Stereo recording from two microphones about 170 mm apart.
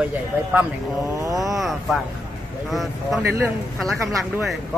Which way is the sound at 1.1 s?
20° right (ahead or behind).